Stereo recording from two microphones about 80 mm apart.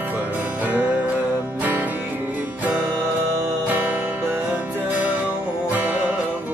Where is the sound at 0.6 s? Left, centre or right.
Centre.